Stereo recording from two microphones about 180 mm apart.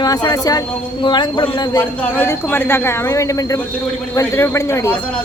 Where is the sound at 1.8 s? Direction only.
10° left (ahead or behind).